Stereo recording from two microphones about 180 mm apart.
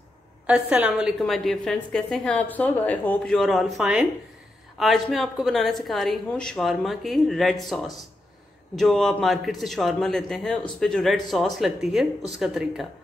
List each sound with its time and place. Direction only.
0.5 s a woman's voice: 5° right (ahead or behind)